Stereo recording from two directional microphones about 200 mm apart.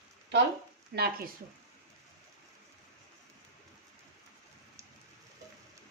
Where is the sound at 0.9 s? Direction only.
55° right (ahead or behind).